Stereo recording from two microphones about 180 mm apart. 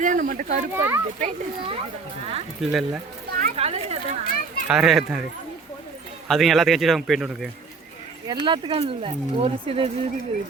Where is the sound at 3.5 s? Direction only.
35° right (ahead or behind).